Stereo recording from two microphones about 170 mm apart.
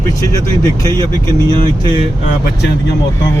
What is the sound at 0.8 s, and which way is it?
Speech, 20° left (ahead or behind).